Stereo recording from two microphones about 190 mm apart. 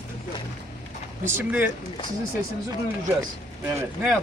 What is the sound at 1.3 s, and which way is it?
Speech, 10° right (ahead or behind).